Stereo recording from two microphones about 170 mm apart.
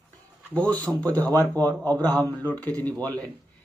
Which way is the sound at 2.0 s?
10° left (ahead or behind).